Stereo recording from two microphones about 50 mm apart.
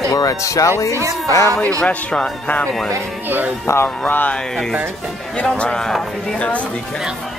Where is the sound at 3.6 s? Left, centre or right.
Left.